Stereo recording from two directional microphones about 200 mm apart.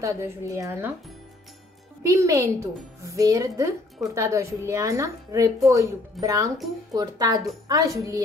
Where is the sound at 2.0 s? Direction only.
15° right (ahead or behind).